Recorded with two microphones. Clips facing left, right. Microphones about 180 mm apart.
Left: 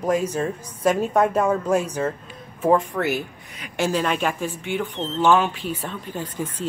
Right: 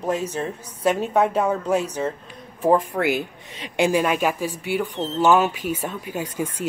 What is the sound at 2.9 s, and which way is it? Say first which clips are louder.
Speech: right 2 dB; 25° right (ahead or behind).